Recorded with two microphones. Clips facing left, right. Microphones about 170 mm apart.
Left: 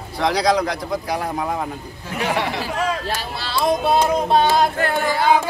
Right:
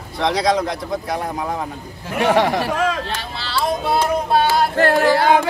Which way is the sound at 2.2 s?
65° right (ahead or behind).